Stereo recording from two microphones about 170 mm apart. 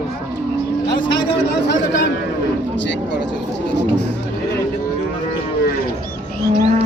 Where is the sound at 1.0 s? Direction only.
90° left.